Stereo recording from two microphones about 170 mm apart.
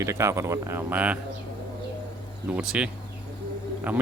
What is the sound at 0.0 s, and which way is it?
Speech, 15° right (ahead or behind).